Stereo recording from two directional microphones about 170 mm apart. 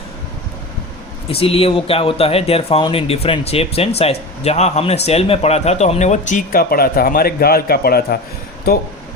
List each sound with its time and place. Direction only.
1.3 s speech: 35° left (ahead or behind); by 8.2 s 65° left (ahead or behind)